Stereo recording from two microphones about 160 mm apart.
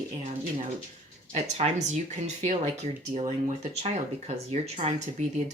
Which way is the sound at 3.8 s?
45° right (ahead or behind).